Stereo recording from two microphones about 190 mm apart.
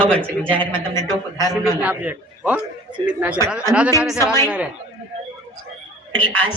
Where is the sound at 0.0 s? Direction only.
5° left (ahead or behind).